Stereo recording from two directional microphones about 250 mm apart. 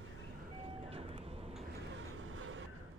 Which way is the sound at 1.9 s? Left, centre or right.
Right.